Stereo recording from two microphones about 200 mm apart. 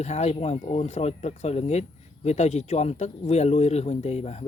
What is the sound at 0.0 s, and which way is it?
Speech, 35° left (ahead or behind).